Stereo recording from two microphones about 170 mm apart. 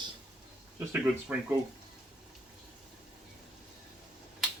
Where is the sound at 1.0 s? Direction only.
10° right (ahead or behind).